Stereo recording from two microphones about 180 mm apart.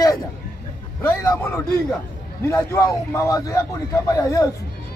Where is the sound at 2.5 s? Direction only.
15° left (ahead or behind).